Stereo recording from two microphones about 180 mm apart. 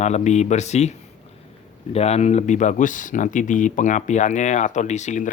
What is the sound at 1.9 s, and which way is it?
Speech, 35° left (ahead or behind).